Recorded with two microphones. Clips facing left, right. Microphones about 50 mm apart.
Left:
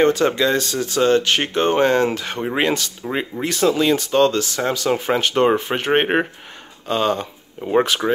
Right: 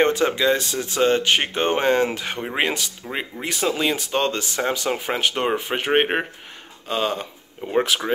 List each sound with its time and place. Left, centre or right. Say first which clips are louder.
0.0 s speech: left 2 dB; right
3.0 s speech: left 5 dB; centre
3.4 s speech: left 5 dB; centre
8.0 s speech: left 4 dB; centre